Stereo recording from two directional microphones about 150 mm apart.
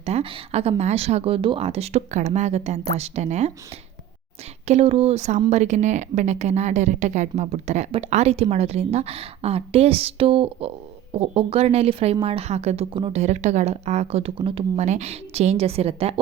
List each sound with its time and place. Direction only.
0.0 s a woman's voice: 40° right (ahead or behind)
4.6 s a woman's voice: 45° right (ahead or behind)
14.8 s a woman's voice: 50° right (ahead or behind)